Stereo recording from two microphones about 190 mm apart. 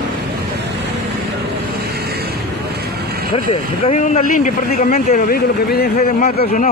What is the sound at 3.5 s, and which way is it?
Speech, 35° left (ahead or behind).